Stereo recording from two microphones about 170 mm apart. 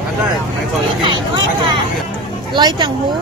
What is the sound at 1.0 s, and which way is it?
Speech, 25° right (ahead or behind).